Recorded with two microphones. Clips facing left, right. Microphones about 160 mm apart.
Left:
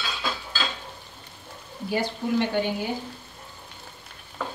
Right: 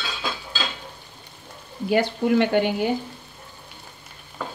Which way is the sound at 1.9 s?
70° right (ahead or behind).